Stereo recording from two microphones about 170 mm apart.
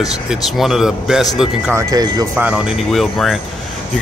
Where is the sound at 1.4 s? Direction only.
15° right (ahead or behind).